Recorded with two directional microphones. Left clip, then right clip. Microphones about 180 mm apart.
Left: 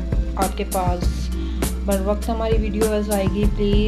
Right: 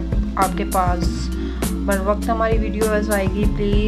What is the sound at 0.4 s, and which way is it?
Music, centre (ahead or behind).